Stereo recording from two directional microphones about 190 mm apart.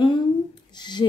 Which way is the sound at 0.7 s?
25° left (ahead or behind).